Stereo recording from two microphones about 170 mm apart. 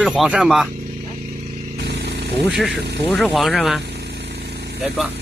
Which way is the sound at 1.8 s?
85° right.